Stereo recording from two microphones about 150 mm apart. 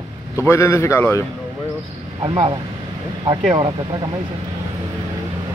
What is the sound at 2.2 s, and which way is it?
Speech, 30° right (ahead or behind).